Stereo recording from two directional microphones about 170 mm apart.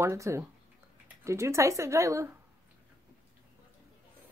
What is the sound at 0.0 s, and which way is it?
Speech, 15° right (ahead or behind).